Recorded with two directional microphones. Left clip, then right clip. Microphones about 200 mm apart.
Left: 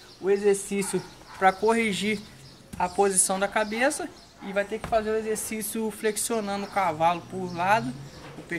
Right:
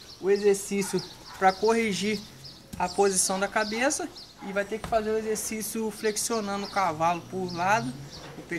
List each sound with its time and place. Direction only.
0.2 s speech: 5° left (ahead or behind)